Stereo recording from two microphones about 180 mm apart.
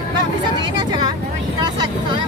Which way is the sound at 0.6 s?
25° right (ahead or behind).